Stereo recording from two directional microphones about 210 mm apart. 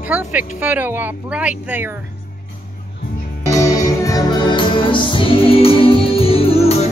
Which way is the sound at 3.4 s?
15° left (ahead or behind).